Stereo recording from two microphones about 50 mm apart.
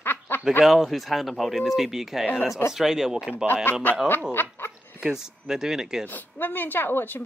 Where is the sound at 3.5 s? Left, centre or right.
Left.